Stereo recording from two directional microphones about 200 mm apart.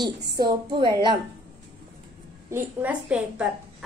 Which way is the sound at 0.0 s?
20° right (ahead or behind).